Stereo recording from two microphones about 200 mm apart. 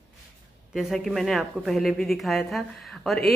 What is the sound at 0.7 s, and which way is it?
A woman's voice, centre (ahead or behind).